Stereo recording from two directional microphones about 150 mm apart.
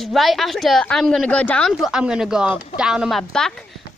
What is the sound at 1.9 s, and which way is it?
A woman's voice, 5° right (ahead or behind).